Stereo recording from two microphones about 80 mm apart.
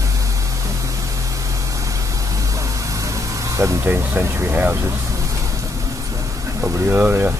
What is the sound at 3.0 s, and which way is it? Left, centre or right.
Vehicle, right.